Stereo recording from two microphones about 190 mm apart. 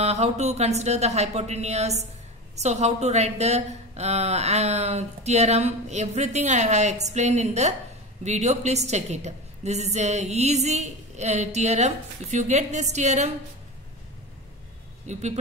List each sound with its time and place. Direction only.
0.0 s a woman's voice: 35° right (ahead or behind)
15.1 s a woman's voice: 35° right (ahead or behind)